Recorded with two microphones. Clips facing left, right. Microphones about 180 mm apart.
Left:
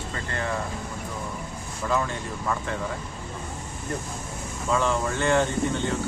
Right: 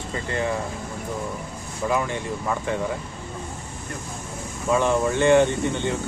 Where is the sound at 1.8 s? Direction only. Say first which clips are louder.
Right 3 dB; 25° right (ahead or behind).